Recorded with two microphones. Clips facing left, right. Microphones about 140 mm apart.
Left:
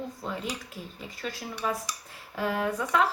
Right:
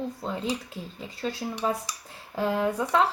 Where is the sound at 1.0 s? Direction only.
25° right (ahead or behind).